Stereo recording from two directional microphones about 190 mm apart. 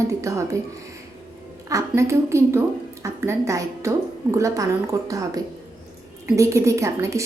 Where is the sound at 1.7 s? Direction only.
15° right (ahead or behind).